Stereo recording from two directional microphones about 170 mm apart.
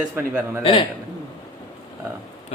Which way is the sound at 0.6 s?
30° left (ahead or behind).